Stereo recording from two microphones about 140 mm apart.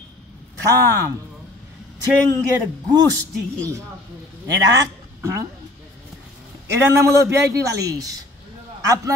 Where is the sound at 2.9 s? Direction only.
25° right (ahead or behind).